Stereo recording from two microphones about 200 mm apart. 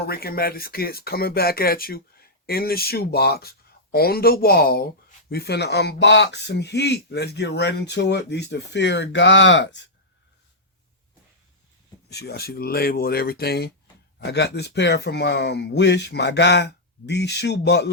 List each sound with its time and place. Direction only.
0.0 s speech: 50° left (ahead or behind)
12.0 s speech: 55° left (ahead or behind)